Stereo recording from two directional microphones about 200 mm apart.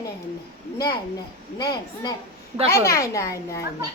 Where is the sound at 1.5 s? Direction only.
20° left (ahead or behind).